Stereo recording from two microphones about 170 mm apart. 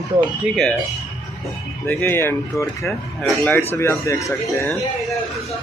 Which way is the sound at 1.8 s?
10° left (ahead or behind).